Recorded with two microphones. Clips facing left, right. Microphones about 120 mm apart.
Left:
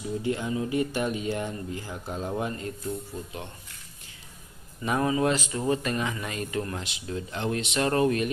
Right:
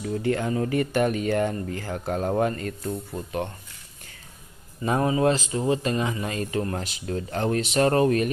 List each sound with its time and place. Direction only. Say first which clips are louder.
0.0 s speech: right 4 dB; 60° right (ahead or behind)
4.8 s speech: right 3 dB; 30° right (ahead or behind)